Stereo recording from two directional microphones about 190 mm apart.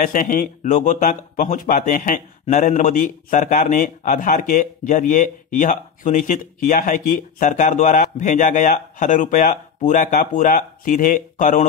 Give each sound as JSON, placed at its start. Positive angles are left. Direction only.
{"t": 0.0, "sound": "a man's voice", "side_deg": 45}